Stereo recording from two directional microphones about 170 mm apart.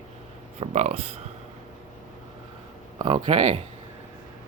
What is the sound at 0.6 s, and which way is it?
Speech, 40° right (ahead or behind).